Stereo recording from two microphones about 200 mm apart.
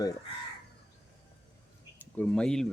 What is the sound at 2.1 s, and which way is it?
Speech, 5° left (ahead or behind).